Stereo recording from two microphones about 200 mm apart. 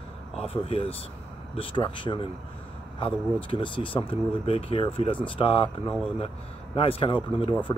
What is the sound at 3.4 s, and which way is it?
Speech, 25° left (ahead or behind).